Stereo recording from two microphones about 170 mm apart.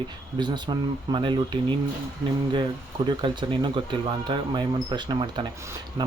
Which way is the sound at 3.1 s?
25° right (ahead or behind).